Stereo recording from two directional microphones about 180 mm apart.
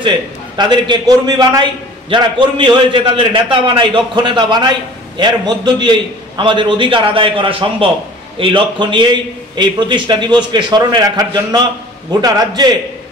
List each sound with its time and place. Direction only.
0.6 s a man's voice: 25° right (ahead or behind)